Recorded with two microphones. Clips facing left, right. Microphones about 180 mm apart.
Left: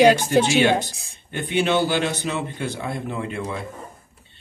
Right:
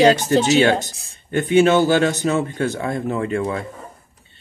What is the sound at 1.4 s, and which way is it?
Speech, 45° right (ahead or behind).